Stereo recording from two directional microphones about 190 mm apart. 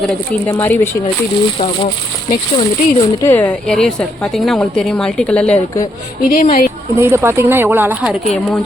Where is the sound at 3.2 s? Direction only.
10° left (ahead or behind).